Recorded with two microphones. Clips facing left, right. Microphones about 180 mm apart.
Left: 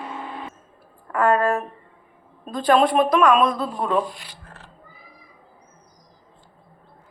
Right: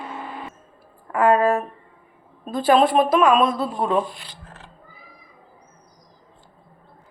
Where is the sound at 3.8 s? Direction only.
25° right (ahead or behind).